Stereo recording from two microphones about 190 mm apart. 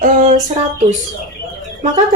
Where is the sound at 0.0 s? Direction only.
40° right (ahead or behind).